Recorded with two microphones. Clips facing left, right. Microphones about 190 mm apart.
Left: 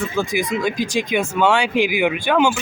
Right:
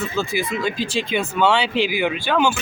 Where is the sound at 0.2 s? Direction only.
15° left (ahead or behind).